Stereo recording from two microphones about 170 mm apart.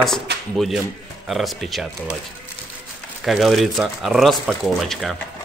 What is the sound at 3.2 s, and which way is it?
Speech, centre (ahead or behind).